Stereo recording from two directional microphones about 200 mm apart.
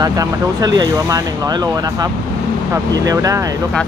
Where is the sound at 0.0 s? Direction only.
20° right (ahead or behind).